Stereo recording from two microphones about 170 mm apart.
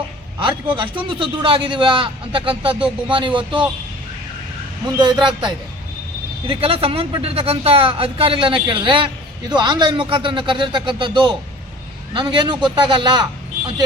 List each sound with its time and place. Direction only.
0.3 s a man's voice: 30° right (ahead or behind)
4.9 s a man's voice: 25° right (ahead or behind)